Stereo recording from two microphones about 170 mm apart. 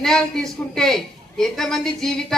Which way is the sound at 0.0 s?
5° left (ahead or behind).